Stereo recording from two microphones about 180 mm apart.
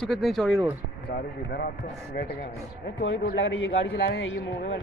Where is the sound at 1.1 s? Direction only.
55° left (ahead or behind).